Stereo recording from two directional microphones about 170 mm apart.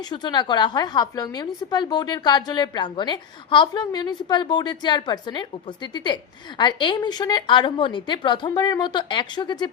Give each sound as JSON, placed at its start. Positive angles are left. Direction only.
{"t": 0.1, "sound": "a woman's voice", "side_deg": 25}